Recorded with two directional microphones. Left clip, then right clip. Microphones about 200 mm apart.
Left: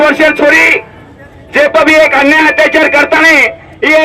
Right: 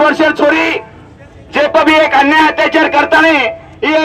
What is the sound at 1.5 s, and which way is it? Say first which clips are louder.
A man's voice: left 3 dB; 25° left (ahead or behind).